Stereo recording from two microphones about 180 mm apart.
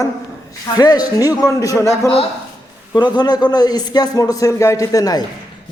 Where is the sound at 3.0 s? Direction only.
25° left (ahead or behind).